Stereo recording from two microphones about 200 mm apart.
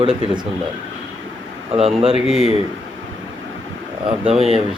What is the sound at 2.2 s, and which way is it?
Speech, 30° left (ahead or behind).